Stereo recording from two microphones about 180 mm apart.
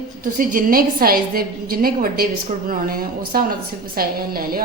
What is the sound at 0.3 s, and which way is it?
A woman's voice, 50° right (ahead or behind).